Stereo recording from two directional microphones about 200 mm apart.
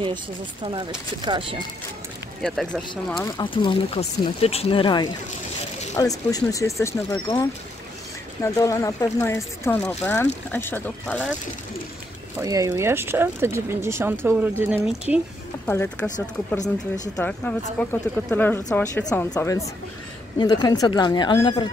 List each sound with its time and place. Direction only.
0.7 s speech: 25° right (ahead or behind)
2.4 s speech: 5° left (ahead or behind)
3.3 s speech: 20° left (ahead or behind); by 11.3 s 5° left (ahead or behind)
12.4 s speech: 15° right (ahead or behind)
15.6 s speech: 10° left (ahead or behind)
17.2 s speech: 10° left (ahead or behind)